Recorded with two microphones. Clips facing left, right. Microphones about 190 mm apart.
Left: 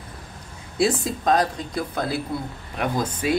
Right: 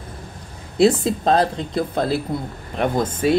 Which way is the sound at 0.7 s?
25° right (ahead or behind).